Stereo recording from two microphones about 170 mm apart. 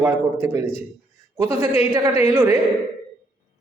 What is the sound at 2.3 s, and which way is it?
Speech, 15° right (ahead or behind).